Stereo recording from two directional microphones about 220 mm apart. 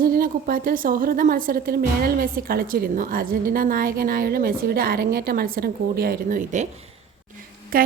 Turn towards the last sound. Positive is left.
turn(degrees=-40)  # may be behind; listen again after turning